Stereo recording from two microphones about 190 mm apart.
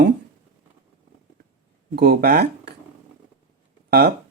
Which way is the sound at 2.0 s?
55° right (ahead or behind).